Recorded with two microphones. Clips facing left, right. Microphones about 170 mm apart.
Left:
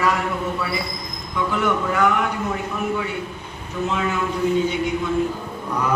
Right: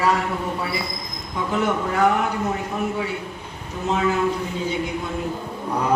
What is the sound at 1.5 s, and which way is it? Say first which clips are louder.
Speech: even; 35° right (ahead or behind).